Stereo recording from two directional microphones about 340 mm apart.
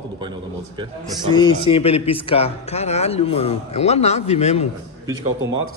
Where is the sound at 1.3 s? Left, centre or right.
Centre.